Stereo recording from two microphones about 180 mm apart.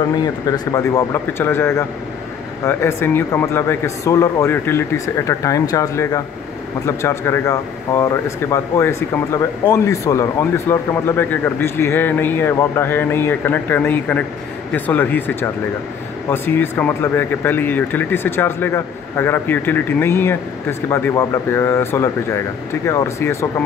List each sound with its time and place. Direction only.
0.2 s speech: 20° left (ahead or behind)